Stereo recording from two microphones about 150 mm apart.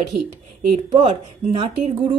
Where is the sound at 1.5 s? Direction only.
40° right (ahead or behind).